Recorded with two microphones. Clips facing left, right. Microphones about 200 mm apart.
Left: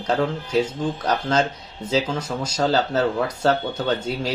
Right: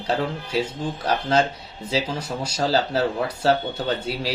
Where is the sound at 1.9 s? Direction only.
10° right (ahead or behind).